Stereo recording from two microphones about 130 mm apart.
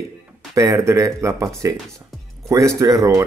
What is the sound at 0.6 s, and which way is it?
Speech, 25° right (ahead or behind).